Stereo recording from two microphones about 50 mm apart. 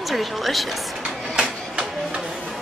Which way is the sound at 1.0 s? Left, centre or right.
Right.